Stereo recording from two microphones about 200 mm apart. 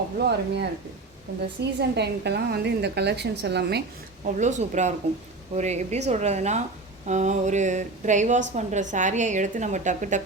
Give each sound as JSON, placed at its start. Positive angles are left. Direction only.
{"t": 0.2, "sound": "a woman's voice", "side_deg": -55}
{"t": 4.4, "sound": "a woman's voice", "side_deg": -35}